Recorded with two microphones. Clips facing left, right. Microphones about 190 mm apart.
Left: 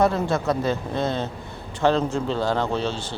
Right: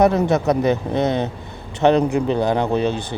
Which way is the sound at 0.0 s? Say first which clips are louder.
Right 5 dB; 20° right (ahead or behind).